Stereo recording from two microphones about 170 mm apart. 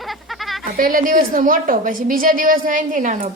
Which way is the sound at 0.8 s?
55° right (ahead or behind).